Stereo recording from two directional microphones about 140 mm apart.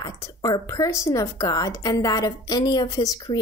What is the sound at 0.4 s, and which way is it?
A woman's voice, 25° left (ahead or behind).